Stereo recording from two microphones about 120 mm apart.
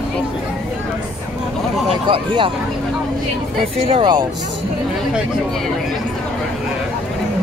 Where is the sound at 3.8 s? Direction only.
40° right (ahead or behind).